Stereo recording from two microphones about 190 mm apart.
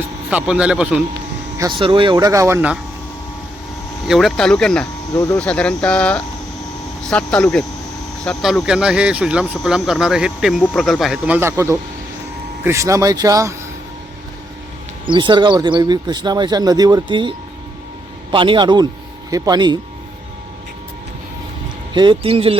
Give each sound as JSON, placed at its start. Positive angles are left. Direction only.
{"t": 0.3, "sound": "speech", "side_deg": -5}
{"t": 1.5, "sound": "speech", "side_deg": -20}
{"t": 4.1, "sound": "speech", "side_deg": 0}
{"t": 5.1, "sound": "speech", "side_deg": 15}
{"t": 5.4, "sound": "speech", "side_deg": 5}
{"t": 15.0, "sound": "speech", "side_deg": -25}
{"t": 21.9, "sound": "speech", "side_deg": -25}